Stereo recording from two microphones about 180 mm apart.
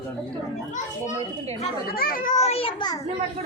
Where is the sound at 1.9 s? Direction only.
55° left (ahead or behind); by 3.0 s 25° left (ahead or behind).